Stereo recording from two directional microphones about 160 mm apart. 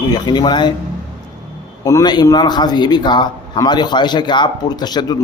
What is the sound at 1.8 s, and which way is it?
A man's voice, 20° left (ahead or behind).